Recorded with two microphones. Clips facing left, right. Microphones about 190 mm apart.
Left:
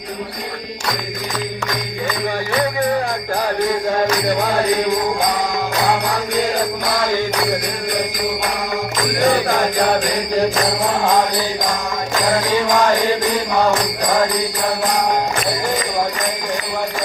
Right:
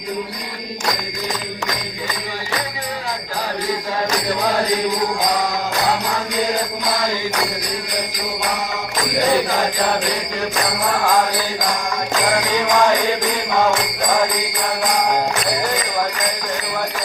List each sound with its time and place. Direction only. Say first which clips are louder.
9.1 s music: left 1 dB; 50° left (ahead or behind)